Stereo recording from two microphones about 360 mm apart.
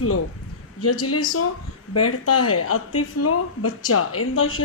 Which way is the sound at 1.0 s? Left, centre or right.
Left.